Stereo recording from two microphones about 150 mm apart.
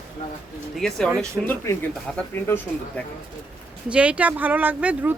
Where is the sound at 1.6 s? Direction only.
15° left (ahead or behind).